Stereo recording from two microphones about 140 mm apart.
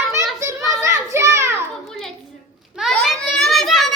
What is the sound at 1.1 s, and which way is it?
Children playing, 20° right (ahead or behind).